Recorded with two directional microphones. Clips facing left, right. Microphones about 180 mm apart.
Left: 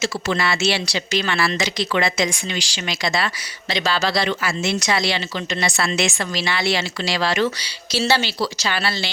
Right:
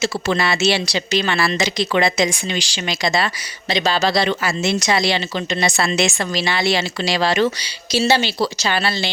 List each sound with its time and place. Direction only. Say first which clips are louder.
0.0 s speech: right 2 dB; 25° right (ahead or behind)